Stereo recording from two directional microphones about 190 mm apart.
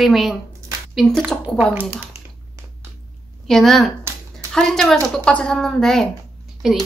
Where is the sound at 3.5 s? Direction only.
Centre (ahead or behind).